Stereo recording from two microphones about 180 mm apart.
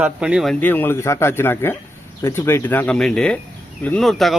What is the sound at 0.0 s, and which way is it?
A man's voice, 5° right (ahead or behind).